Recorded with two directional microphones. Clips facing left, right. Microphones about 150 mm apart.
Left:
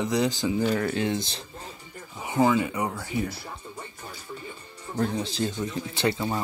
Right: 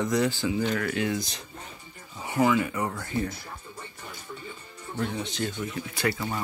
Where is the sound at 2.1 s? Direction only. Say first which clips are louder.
Left 2 dB; 15° left (ahead or behind).